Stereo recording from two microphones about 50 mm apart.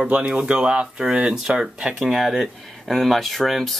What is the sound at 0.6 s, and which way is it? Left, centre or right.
Speech, centre.